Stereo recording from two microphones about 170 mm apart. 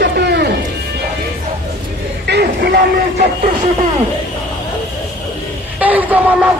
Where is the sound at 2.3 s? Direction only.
75° right (ahead or behind).